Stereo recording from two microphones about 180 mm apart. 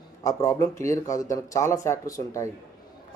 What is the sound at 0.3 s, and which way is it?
A man's voice, 15° left (ahead or behind).